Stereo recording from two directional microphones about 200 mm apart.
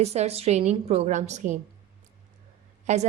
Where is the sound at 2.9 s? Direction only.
35° right (ahead or behind).